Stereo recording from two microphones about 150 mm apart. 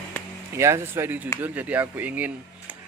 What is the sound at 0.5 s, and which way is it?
Speech, 20° right (ahead or behind).